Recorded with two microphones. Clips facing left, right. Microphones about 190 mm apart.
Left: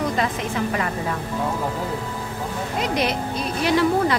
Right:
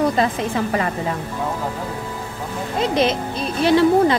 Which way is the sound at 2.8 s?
25° right (ahead or behind).